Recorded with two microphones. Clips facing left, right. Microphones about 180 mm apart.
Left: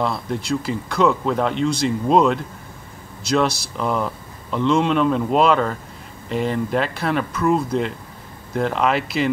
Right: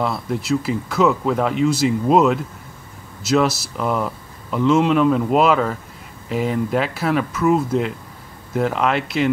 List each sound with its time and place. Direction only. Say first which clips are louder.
0.0 s speech: right 1 dB; centre (ahead or behind)